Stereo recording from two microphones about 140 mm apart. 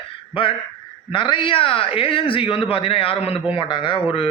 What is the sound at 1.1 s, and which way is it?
Speech, 35° left (ahead or behind).